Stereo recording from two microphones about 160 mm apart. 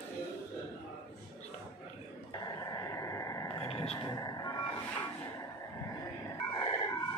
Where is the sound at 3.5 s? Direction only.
35° left (ahead or behind).